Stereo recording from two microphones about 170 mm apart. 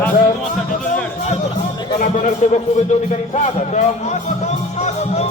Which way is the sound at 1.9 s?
45° left (ahead or behind).